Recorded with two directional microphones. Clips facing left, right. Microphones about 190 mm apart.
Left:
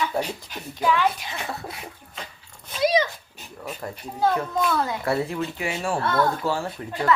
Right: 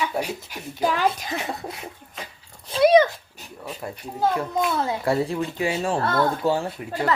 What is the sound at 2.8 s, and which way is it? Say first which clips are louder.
Dog: right 6 dB; 55° right (ahead or behind).